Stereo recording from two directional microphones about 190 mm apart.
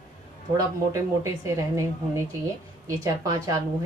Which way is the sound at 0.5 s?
15° right (ahead or behind).